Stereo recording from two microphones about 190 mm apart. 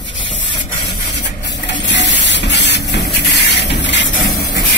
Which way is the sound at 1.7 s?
70° left (ahead or behind).